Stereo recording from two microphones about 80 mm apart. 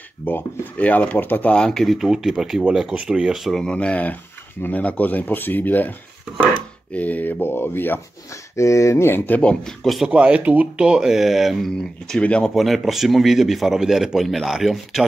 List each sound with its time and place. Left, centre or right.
0.2 s speech: left
1.6 s speech: centre
3.6 s speech: centre
8.5 s speech: left; by 10.0 s centre
10.0 s speech: centre
12.1 s speech: centre
12.5 s speech: centre